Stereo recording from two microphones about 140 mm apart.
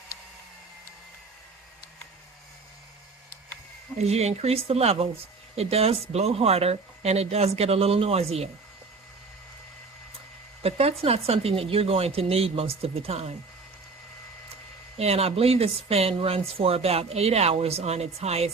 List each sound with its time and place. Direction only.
3.9 s speech: 50° right (ahead or behind)
10.6 s speech: 45° right (ahead or behind)
14.9 s speech: 50° right (ahead or behind)